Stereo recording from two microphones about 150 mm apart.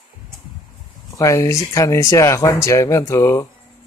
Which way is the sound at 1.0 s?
20° left (ahead or behind).